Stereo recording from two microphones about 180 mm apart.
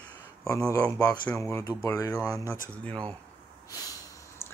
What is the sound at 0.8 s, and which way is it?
Speech, 5° left (ahead or behind).